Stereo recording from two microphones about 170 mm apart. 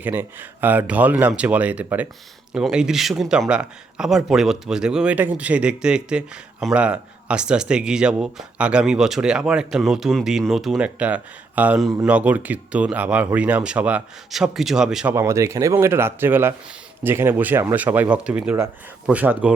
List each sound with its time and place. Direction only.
0.0 s speech: 10° right (ahead or behind)
15.1 s speech: 15° right (ahead or behind)